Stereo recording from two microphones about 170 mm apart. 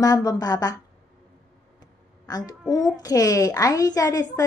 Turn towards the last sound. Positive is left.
turn(degrees=20)  # may be behind; listen again after turning